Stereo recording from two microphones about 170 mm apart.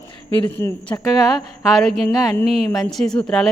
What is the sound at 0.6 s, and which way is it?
Speech, 15° left (ahead or behind).